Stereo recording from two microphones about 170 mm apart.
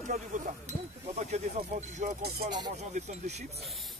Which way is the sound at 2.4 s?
25° right (ahead or behind).